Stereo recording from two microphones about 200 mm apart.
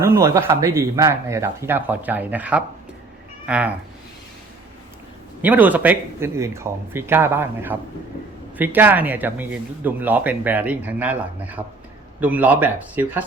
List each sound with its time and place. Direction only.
0.0 s speech: 15° right (ahead or behind)
5.4 s speech: 10° right (ahead or behind)